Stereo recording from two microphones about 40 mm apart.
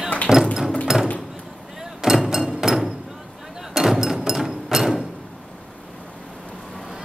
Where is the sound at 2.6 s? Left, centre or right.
Centre.